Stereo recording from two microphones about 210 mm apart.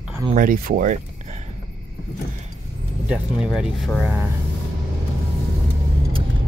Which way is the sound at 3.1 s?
5° right (ahead or behind).